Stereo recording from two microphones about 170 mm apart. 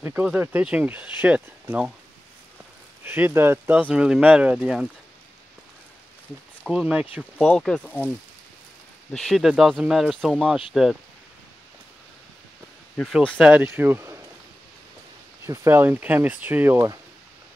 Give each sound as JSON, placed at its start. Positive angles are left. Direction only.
{"t": 0.0, "sound": "speech", "side_deg": -10}
{"t": 3.0, "sound": "speech", "side_deg": -10}
{"t": 6.7, "sound": "speech", "side_deg": -5}
{"t": 7.4, "sound": "speech", "side_deg": 5}
{"t": 9.1, "sound": "speech", "side_deg": 0}
{"t": 12.9, "sound": "speech", "side_deg": 5}
{"t": 13.4, "sound": "speech", "side_deg": -10}
{"t": 15.4, "sound": "speech", "side_deg": -15}